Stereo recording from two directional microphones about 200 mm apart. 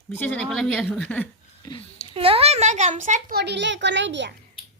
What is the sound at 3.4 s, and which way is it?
Speech, 60° right (ahead or behind).